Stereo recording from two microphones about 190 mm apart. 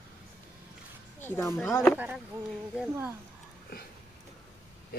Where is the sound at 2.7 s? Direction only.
5° right (ahead or behind).